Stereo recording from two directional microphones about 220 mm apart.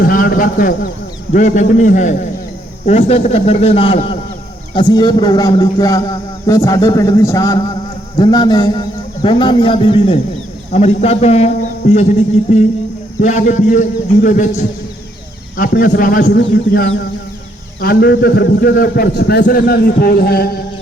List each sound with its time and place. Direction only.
0.0 s a sound: 40° left (ahead or behind)
1.3 s a man's voice: 35° left (ahead or behind)
13.2 s a man's voice: 35° left (ahead or behind)